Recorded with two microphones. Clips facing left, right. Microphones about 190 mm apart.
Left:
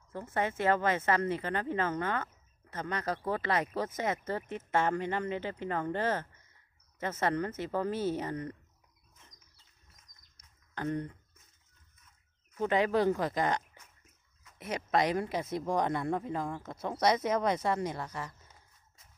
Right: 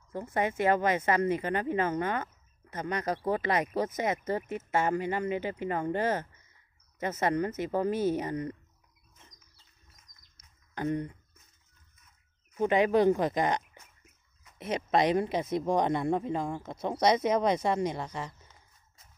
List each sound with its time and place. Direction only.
0.1 s speech: 15° right (ahead or behind)
10.7 s speech: 15° right (ahead or behind)
12.5 s speech: 15° right (ahead or behind)